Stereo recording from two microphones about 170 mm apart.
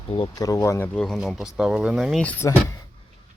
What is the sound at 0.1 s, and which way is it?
Speech, 25° left (ahead or behind).